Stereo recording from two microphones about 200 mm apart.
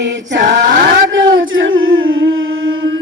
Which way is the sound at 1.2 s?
75° right (ahead or behind).